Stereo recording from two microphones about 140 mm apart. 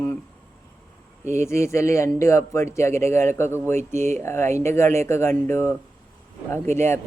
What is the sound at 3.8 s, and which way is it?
Speech, 55° right (ahead or behind).